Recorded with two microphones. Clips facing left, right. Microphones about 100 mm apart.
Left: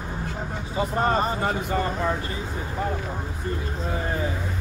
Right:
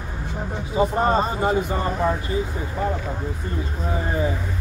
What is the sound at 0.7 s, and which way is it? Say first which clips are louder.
Speech: right 4 dB; 20° right (ahead or behind).